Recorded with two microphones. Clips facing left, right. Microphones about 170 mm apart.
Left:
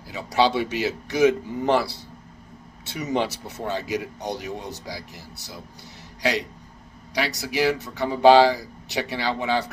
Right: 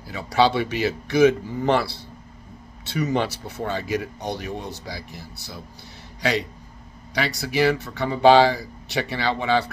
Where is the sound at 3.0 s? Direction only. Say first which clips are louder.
Right 2 dB; 20° left (ahead or behind).